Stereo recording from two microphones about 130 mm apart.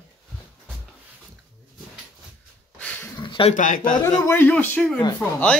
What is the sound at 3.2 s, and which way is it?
Speech, 35° left (ahead or behind).